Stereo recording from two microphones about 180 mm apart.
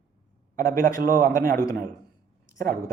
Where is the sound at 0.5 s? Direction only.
50° right (ahead or behind).